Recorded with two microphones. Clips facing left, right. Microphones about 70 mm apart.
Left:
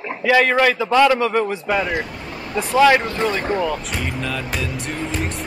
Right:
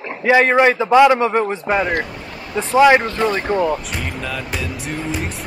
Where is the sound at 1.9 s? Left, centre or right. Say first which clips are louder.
Right 2 dB; centre.